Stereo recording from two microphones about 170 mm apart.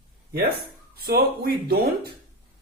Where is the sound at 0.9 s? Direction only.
70° right (ahead or behind).